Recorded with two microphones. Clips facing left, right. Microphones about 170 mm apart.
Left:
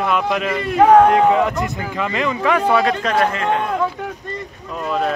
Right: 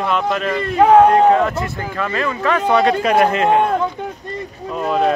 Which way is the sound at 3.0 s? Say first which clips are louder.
Right 4 dB; 15° right (ahead or behind).